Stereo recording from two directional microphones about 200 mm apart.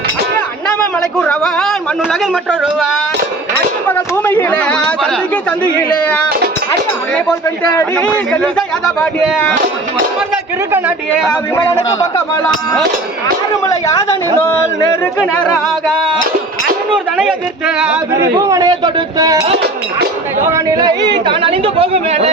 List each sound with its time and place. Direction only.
0.7 s a man's voice: 5° left (ahead or behind)
7.9 s speech: 5° left (ahead or behind)
11.5 s speech: 15° left (ahead or behind)
13.7 s speech: 15° left (ahead or behind); by 18.3 s 5° right (ahead or behind)
18.3 s speech: 20° right (ahead or behind)
20.5 s speech: 15° right (ahead or behind)